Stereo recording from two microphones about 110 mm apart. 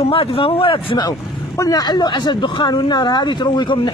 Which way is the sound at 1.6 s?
35° left (ahead or behind).